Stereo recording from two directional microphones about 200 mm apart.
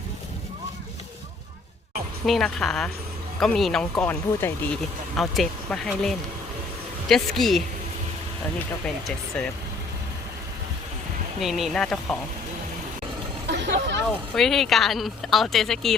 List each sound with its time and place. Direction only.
2.2 s speech: centre (ahead or behind)
11.3 s speech: centre (ahead or behind)
13.5 s hubbub: 60° right (ahead or behind)
14.3 s speech: centre (ahead or behind)